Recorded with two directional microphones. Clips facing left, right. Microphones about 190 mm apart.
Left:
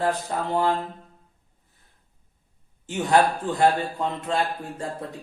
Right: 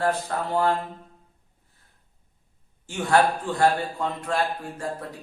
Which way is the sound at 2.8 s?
20° left (ahead or behind).